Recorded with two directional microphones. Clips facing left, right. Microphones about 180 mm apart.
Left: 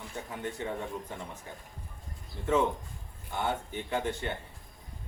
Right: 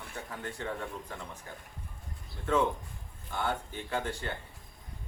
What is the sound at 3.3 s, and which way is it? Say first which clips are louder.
Speech: left 1 dB; 15° left (ahead or behind).